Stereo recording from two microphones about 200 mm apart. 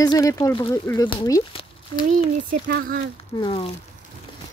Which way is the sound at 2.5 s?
45° right (ahead or behind).